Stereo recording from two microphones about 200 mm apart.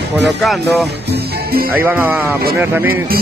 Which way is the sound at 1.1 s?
50° right (ahead or behind).